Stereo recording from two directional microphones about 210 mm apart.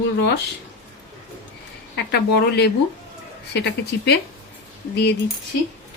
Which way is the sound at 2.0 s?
55° left (ahead or behind).